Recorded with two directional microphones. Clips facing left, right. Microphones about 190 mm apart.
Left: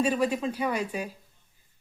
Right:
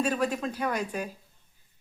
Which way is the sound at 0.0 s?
10° left (ahead or behind).